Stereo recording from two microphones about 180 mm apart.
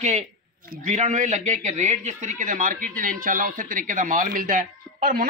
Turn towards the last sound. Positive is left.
turn(degrees=-55)  # may be behind; listen again after turning